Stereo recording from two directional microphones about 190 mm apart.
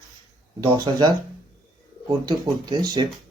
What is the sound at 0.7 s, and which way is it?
Speech, 20° right (ahead or behind).